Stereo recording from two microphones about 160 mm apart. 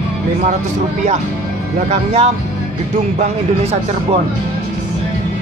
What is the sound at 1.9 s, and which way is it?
Speech, 40° right (ahead or behind).